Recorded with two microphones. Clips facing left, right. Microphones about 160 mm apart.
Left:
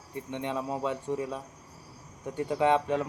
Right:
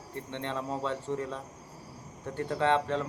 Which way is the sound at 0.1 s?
10° left (ahead or behind).